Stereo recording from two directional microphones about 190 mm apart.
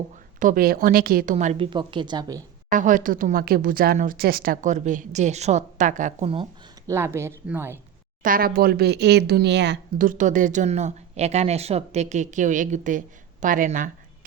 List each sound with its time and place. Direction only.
0.3 s speech: 45° right (ahead or behind)
1.5 s a woman's voice: 25° right (ahead or behind)
2.7 s speech: 45° right (ahead or behind)
6.8 s speech: 15° right (ahead or behind)
8.2 s speech: 50° right (ahead or behind); by 10.1 s 65° right (ahead or behind)
10.1 s speech: 40° right (ahead or behind)